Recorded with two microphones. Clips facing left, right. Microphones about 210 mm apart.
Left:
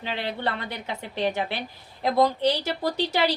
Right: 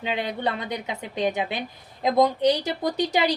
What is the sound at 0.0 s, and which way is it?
A woman's voice, 15° right (ahead or behind).